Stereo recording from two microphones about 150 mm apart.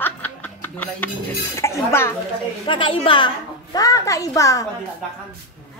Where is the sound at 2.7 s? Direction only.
35° left (ahead or behind).